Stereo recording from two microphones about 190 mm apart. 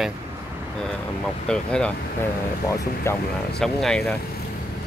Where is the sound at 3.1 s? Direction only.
15° left (ahead or behind).